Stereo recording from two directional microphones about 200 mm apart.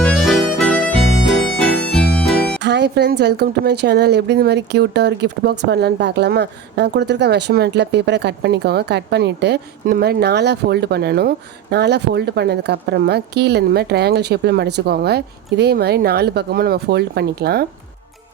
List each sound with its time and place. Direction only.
0.0 s harmonica: centre (ahead or behind)
2.6 s speech: 60° right (ahead or behind)